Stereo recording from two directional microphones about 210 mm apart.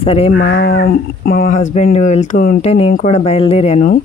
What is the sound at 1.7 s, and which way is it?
Speech, 30° left (ahead or behind).